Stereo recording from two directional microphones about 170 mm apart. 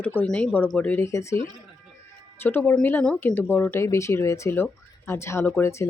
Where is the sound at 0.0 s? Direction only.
10° left (ahead or behind).